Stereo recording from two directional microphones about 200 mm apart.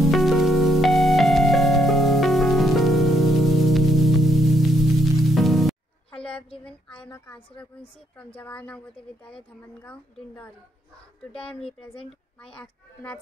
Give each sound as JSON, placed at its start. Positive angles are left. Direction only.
{"t": 0.0, "sound": "music", "side_deg": 0}
{"t": 8.4, "sound": "a woman's voice", "side_deg": 5}
{"t": 11.4, "sound": "speech", "side_deg": 25}